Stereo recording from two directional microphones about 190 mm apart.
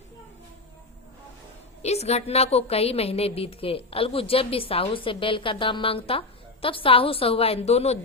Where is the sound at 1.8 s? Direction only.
35° left (ahead or behind).